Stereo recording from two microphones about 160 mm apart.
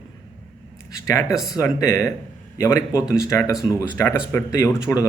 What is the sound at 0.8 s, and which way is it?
Speech, 20° left (ahead or behind).